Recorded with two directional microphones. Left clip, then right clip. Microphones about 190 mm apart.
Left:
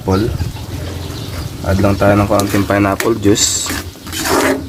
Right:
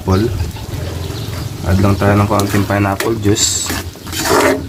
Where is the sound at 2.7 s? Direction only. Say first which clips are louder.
Left 2 dB; 50° left (ahead or behind).